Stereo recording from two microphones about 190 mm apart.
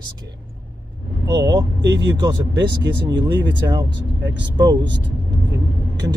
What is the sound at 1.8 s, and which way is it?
Speech, 65° right (ahead or behind).